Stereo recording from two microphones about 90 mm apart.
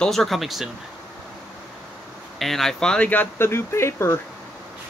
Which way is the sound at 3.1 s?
25° left (ahead or behind).